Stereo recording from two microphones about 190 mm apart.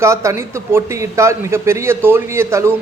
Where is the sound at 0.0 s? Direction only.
15° right (ahead or behind).